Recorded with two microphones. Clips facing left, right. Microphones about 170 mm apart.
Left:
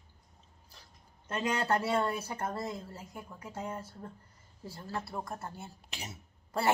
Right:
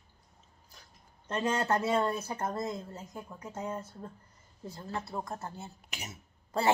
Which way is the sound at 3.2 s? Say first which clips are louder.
Right 2 dB; 20° right (ahead or behind).